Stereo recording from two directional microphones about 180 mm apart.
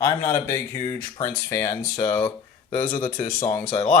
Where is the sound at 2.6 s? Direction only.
45° left (ahead or behind).